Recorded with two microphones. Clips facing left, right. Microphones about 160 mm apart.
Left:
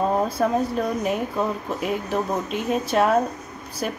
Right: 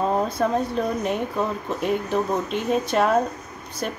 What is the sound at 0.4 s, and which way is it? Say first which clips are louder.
Speech: left 1 dB; 5° left (ahead or behind).